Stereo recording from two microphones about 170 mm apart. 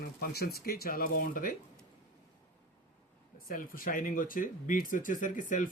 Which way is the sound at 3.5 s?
55° left (ahead or behind).